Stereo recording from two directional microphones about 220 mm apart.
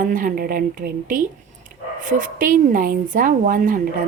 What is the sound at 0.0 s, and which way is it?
A woman's voice, 40° right (ahead or behind).